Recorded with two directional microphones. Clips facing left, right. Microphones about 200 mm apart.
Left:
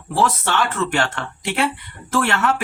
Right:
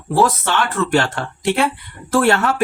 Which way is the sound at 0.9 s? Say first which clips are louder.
Right 5 dB; 35° right (ahead or behind).